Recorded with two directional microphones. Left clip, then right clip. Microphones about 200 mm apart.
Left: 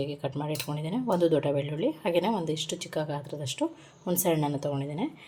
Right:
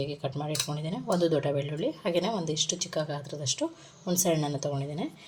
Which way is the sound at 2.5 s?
30° left (ahead or behind).